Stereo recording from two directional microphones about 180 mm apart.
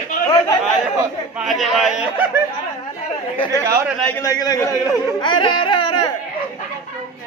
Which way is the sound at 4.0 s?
15° left (ahead or behind).